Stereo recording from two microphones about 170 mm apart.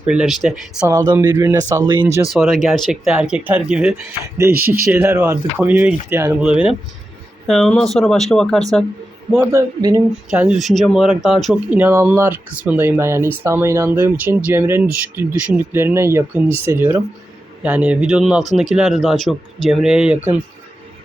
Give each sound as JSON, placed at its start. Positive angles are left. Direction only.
{"t": 0.0, "sound": "speech", "side_deg": -5}
{"t": 0.9, "sound": "speech", "side_deg": -15}
{"t": 2.3, "sound": "speech", "side_deg": 0}
{"t": 9.5, "sound": "speech", "side_deg": -20}
{"t": 10.2, "sound": "speech", "side_deg": -5}